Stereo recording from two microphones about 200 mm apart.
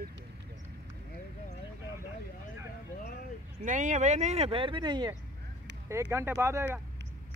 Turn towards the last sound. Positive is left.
turn(degrees=-10)  # may be behind; listen again after turning